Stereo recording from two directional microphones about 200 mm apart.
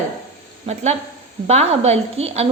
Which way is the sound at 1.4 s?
30° right (ahead or behind).